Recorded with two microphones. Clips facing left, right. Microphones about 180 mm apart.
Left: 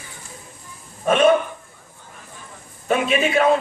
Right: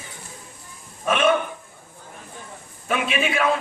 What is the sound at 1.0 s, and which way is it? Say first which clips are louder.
Speech: left 5 dB; 40° left (ahead or behind).